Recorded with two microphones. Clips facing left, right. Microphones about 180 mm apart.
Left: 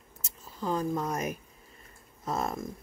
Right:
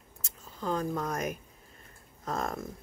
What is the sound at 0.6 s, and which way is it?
Speech, 5° left (ahead or behind).